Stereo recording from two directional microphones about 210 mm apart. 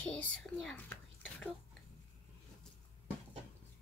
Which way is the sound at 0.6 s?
10° left (ahead or behind).